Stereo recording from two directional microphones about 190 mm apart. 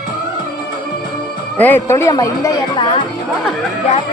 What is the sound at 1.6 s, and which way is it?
Speech, 10° left (ahead or behind).